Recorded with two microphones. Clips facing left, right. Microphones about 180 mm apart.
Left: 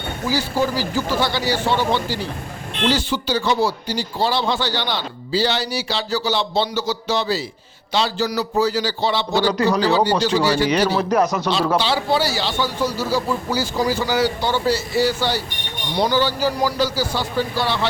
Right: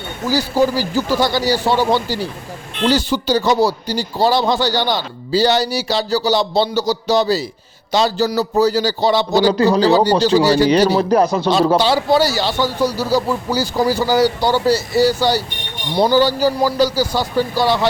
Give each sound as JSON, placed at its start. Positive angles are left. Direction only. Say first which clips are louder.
{"t": 0.3, "sound": "a man's voice", "louder": "right 5 dB", "side_deg": -40}
{"t": 11.8, "sound": "speech", "louder": "right 5 dB", "side_deg": -40}